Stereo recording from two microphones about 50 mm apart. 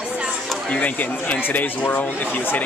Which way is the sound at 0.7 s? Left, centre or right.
Left.